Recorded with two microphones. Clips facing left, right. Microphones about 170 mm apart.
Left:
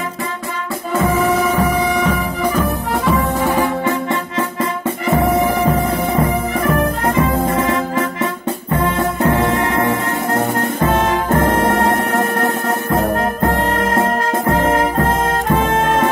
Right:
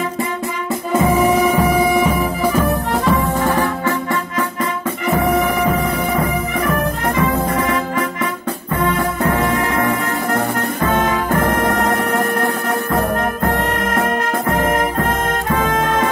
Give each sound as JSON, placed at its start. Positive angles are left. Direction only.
{"t": 0.9, "sound": "music", "side_deg": -15}
{"t": 3.3, "sound": "music", "side_deg": 10}